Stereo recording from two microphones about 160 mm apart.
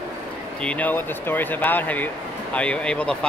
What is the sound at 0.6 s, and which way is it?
Speech, 10° left (ahead or behind).